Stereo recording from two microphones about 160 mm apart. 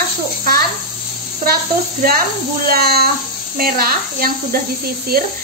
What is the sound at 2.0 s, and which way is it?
Speech, 65° right (ahead or behind).